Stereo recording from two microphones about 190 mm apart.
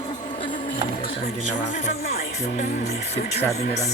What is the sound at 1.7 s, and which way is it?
Speech, 40° left (ahead or behind).